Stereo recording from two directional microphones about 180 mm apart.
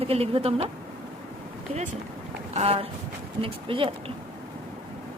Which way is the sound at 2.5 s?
35° right (ahead or behind).